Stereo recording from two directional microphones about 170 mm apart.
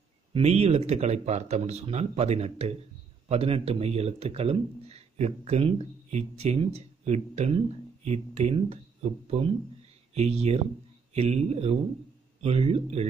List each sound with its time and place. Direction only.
0.3 s speech: 35° right (ahead or behind)